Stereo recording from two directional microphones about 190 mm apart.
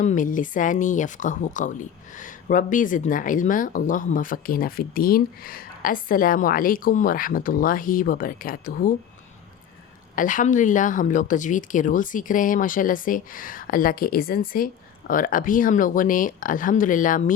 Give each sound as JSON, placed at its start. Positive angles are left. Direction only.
{"t": 0.0, "sound": "speech", "side_deg": 40}
{"t": 10.2, "sound": "speech", "side_deg": 45}